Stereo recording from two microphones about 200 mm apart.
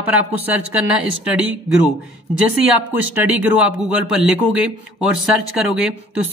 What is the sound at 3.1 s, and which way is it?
Speech, 5° right (ahead or behind).